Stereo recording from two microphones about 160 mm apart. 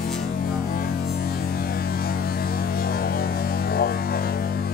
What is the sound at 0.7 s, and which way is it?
Mains hum, 70° left (ahead or behind).